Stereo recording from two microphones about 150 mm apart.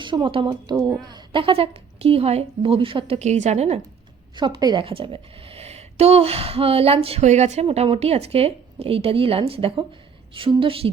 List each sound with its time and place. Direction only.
0.0 s a woman's voice: 30° right (ahead or behind)
4.4 s a woman's voice: 30° right (ahead or behind)